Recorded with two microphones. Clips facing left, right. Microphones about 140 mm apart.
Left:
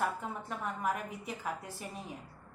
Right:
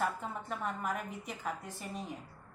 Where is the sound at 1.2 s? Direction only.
5° left (ahead or behind).